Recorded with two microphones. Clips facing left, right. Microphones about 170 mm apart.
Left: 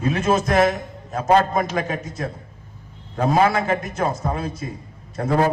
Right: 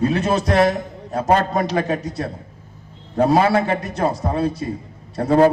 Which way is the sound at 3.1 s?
35° right (ahead or behind).